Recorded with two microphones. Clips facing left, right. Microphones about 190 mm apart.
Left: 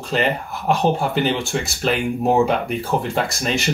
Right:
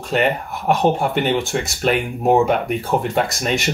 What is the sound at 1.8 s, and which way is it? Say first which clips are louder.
Speech: right 1 dB; 50° right (ahead or behind).